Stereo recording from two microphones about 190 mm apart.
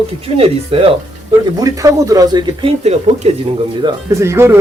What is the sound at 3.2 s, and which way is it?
Speech, 35° right (ahead or behind).